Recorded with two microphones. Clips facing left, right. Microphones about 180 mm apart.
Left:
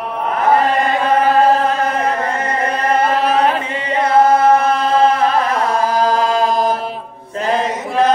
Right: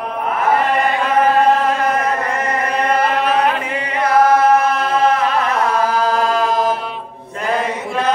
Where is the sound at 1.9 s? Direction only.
30° left (ahead or behind).